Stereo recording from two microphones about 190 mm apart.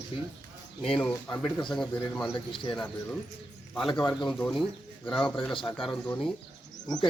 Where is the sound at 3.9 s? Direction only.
15° left (ahead or behind).